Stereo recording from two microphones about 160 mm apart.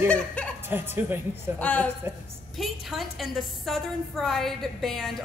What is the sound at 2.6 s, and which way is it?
A woman's voice, centre (ahead or behind).